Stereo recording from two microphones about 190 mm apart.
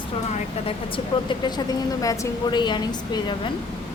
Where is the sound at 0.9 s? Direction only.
25° left (ahead or behind).